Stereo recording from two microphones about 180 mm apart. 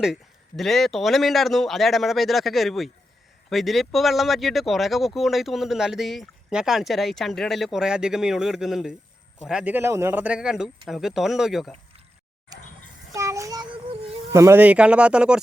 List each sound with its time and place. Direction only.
0.0 s speech: centre (ahead or behind)
13.1 s child singing: 15° right (ahead or behind)
14.3 s speech: 15° right (ahead or behind)